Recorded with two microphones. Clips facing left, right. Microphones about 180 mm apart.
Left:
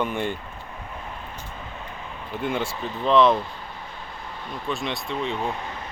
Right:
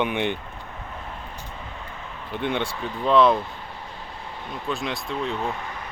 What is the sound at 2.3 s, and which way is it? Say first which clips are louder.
Speech: right 1 dB; centre (ahead or behind).